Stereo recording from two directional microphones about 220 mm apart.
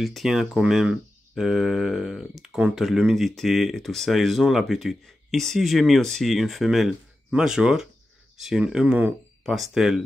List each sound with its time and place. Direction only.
0.0 s speech: centre (ahead or behind)